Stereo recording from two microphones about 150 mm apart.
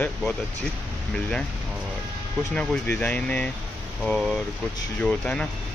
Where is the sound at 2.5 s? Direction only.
5° left (ahead or behind).